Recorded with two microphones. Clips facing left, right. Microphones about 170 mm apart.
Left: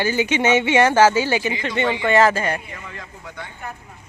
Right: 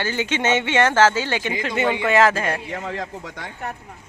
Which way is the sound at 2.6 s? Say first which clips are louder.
Right 8 dB; 90° right.